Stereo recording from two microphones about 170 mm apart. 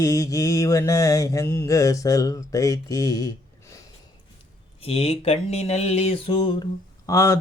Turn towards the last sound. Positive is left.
turn(degrees=15)  # may be behind; listen again after turning